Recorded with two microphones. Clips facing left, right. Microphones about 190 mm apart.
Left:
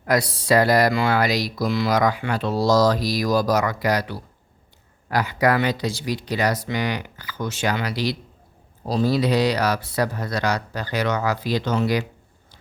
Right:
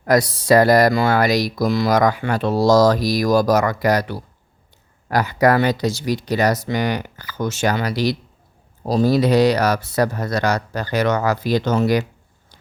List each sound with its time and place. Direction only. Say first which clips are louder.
0.0 s speech: right 5 dB; 45° right (ahead or behind)